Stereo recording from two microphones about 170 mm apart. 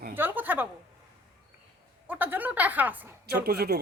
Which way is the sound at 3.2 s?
70° right (ahead or behind).